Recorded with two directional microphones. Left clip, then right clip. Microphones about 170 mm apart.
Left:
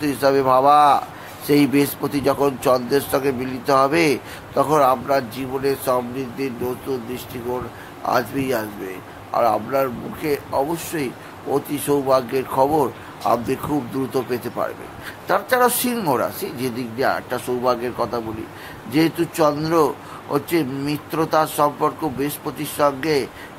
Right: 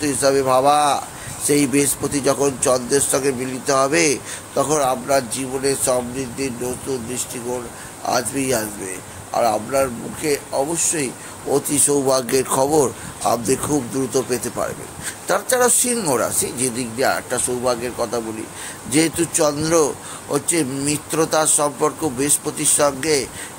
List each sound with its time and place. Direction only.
0.0 s speech: centre (ahead or behind)
8.0 s speech: 5° right (ahead or behind)
12.1 s speech: 45° right (ahead or behind)
12.7 s a man's voice: 20° right (ahead or behind); by 18.2 s centre (ahead or behind)
18.9 s a man's voice: 15° right (ahead or behind)